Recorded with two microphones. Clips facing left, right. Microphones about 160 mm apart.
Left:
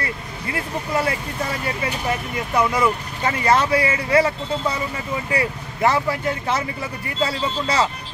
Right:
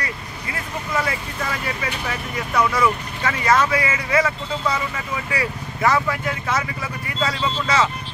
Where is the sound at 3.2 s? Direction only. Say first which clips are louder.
Even; 30° left (ahead or behind).